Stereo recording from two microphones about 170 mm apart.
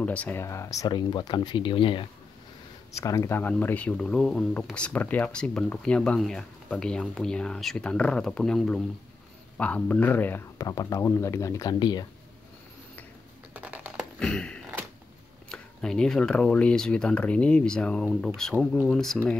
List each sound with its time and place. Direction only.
0.0 s speech: 10° left (ahead or behind); by 2.0 s 30° left (ahead or behind)
2.9 s speech: 15° left (ahead or behind)
13.5 s typing: 10° right (ahead or behind)
14.2 s speech: 5° left (ahead or behind)